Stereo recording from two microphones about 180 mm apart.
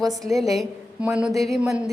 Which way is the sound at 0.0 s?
Centre (ahead or behind).